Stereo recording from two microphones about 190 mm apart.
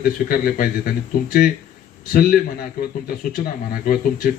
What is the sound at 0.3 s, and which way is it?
Speech, 50° left (ahead or behind).